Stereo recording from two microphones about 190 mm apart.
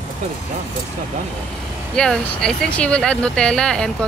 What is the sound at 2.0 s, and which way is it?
Speech, 5° left (ahead or behind).